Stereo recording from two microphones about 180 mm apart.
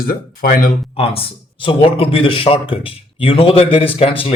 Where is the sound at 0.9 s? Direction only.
30° left (ahead or behind).